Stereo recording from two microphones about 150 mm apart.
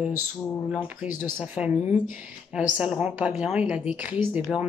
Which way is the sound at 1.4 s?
10° right (ahead or behind).